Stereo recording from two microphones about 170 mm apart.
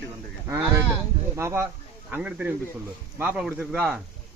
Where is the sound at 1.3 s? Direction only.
15° right (ahead or behind).